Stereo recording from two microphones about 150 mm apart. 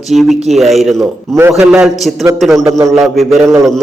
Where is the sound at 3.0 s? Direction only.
Centre (ahead or behind).